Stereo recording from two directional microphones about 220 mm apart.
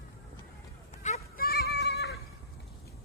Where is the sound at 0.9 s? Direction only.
30° left (ahead or behind); by 2.2 s 50° left (ahead or behind).